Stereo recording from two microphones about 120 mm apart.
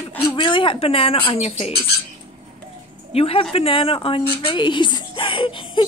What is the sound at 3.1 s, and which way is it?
A woman's voice, 55° left (ahead or behind).